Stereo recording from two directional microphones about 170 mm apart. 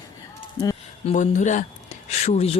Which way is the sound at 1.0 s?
45° left (ahead or behind).